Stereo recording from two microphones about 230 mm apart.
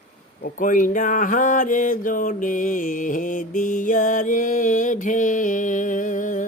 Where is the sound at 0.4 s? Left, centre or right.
Left.